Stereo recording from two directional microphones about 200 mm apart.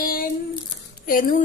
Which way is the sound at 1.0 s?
45° left (ahead or behind).